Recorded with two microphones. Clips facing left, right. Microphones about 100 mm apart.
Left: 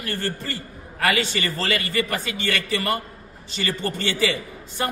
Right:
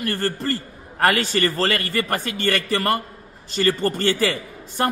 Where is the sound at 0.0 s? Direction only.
45° right (ahead or behind).